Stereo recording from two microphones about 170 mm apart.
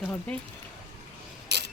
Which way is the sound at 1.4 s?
80° right.